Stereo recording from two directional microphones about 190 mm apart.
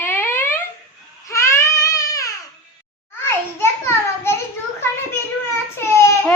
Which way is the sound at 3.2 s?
15° left (ahead or behind).